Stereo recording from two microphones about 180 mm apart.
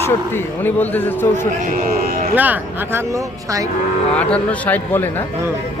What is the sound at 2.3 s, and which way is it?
Speech, 10° right (ahead or behind).